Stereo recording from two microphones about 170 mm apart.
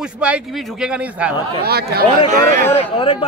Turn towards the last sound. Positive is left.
turn(degrees=35)  # may be behind; listen again after turning